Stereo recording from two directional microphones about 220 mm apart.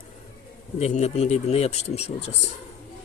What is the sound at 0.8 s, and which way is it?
Speech, 30° left (ahead or behind).